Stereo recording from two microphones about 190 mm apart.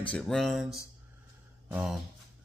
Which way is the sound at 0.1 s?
Centre (ahead or behind).